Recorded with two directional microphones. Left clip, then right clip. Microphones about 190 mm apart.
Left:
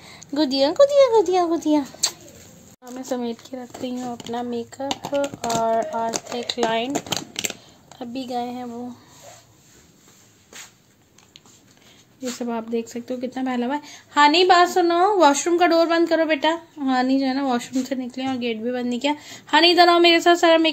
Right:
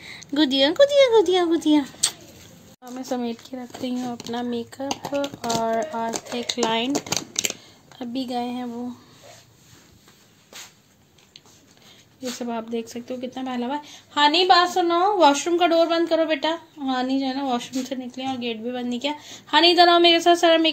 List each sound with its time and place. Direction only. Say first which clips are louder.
0.0 s speech: right 1 dB; 5° left (ahead or behind)
7.1 s a sound: right 1 dB; 15° left (ahead or behind)
8.0 s speech: even; 5° left (ahead or behind)
12.4 s a woman's voice: left 3 dB; 10° left (ahead or behind)